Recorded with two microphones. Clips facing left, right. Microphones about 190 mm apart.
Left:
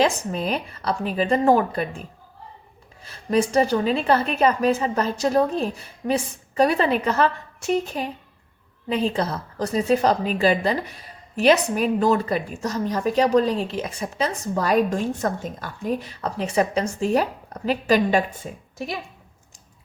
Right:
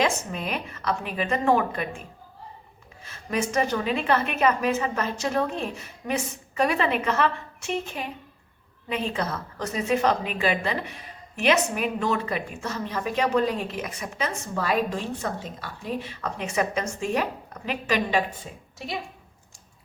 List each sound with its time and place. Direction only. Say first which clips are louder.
0.0 s a woman's voice: left 4 dB; 35° left (ahead or behind)